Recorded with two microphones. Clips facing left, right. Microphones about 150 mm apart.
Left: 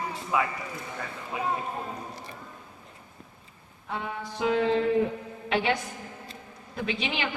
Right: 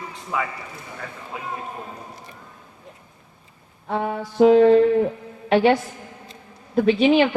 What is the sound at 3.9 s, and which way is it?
Mantra, 50° right (ahead or behind).